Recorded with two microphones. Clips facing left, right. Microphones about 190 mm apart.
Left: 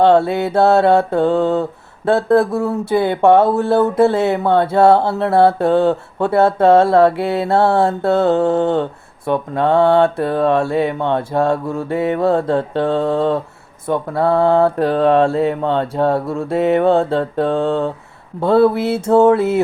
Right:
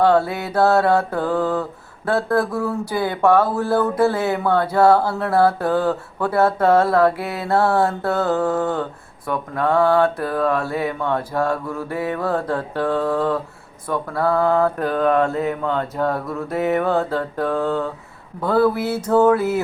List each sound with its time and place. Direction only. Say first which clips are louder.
0.0 s speech: left 5 dB; 25° left (ahead or behind)